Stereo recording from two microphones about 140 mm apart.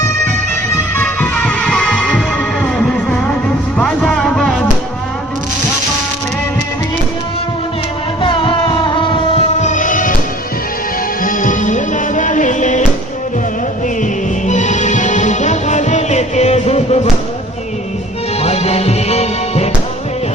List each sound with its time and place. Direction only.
0.9 s music: 15° left (ahead or behind)
8.2 s music: 40° left (ahead or behind)
9.6 s music: 60° left (ahead or behind)
11.2 s music: 70° left (ahead or behind)
14.0 s music: 60° left (ahead or behind)
18.4 s music: 50° left (ahead or behind)